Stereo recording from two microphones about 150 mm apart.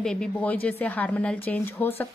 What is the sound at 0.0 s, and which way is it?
A woman's voice, 5° left (ahead or behind).